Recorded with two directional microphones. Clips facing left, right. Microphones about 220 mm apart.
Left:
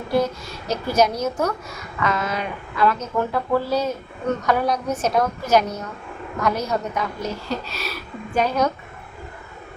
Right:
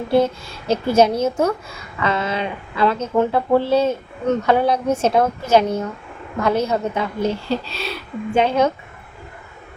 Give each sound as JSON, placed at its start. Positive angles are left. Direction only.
{"t": 0.1, "sound": "a woman's voice", "side_deg": -25}